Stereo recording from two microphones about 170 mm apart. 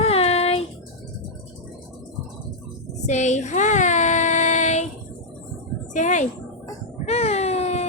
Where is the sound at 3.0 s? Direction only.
45° left (ahead or behind).